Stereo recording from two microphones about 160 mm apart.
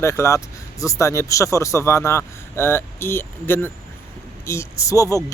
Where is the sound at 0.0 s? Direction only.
15° left (ahead or behind).